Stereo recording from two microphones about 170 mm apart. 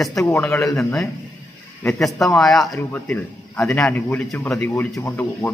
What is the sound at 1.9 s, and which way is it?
A man's voice, centre (ahead or behind).